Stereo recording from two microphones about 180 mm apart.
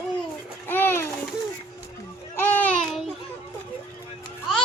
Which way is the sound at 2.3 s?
10° left (ahead or behind).